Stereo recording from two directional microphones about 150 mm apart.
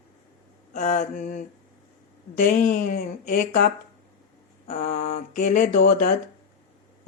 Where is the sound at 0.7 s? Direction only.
60° left (ahead or behind).